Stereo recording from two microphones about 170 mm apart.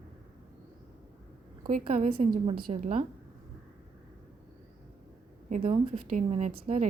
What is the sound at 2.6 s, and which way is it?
Speech, 60° right (ahead or behind).